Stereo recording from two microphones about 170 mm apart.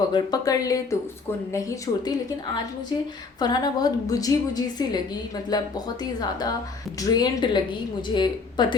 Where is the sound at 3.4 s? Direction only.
25° left (ahead or behind).